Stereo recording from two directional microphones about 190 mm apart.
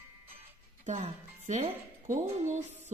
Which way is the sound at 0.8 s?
40° right (ahead or behind).